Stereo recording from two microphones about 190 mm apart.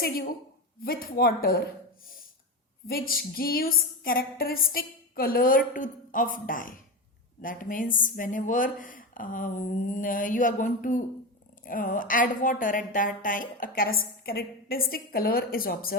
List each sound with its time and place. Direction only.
0.0 s a woman's voice: 50° left (ahead or behind)
2.8 s a woman's voice: 50° left (ahead or behind)